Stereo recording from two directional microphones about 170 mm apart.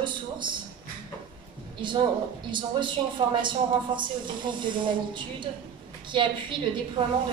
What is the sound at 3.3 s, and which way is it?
Speech, 30° right (ahead or behind).